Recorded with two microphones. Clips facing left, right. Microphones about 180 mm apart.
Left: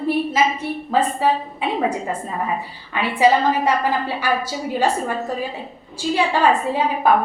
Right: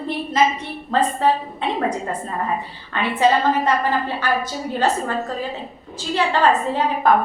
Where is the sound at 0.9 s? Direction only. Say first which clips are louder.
Right 1 dB; 10° left (ahead or behind).